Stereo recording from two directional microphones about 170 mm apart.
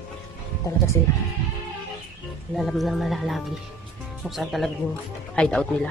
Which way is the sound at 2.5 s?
Centre (ahead or behind).